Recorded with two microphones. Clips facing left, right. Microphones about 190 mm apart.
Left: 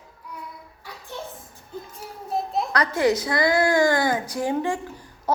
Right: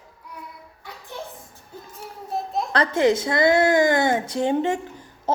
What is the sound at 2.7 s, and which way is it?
A woman's voice, 25° right (ahead or behind).